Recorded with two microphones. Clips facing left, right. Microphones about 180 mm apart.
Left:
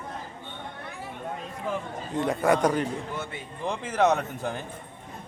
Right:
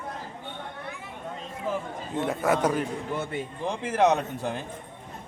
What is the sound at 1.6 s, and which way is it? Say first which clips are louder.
A man's voice: right 1 dB; 5° right (ahead or behind).